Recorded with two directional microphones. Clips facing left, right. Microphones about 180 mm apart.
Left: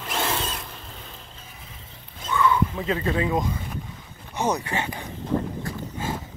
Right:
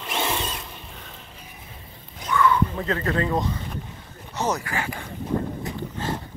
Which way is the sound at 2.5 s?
10° left (ahead or behind).